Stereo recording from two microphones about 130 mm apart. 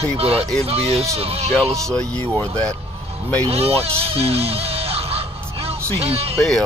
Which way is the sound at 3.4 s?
50° right (ahead or behind).